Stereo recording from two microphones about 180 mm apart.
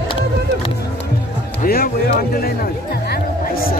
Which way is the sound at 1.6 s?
55° left (ahead or behind).